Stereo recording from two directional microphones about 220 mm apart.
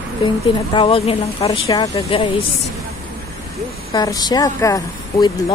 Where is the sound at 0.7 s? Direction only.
25° left (ahead or behind).